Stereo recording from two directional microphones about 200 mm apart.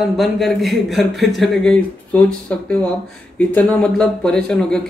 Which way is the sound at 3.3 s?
5° left (ahead or behind).